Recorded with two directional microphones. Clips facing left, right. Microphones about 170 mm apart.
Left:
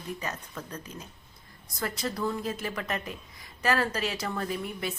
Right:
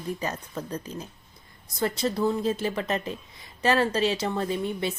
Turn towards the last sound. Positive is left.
turn(degrees=-25)  # may be behind; listen again after turning